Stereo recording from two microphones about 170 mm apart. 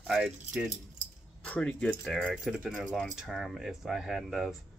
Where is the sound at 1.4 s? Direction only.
10° left (ahead or behind).